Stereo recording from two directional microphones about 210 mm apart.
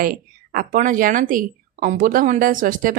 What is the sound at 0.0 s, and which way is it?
A woman's voice, 40° right (ahead or behind).